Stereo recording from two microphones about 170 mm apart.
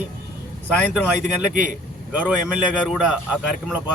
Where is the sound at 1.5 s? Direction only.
50° right (ahead or behind).